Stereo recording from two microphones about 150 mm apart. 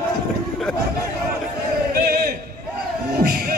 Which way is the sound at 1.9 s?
90° right.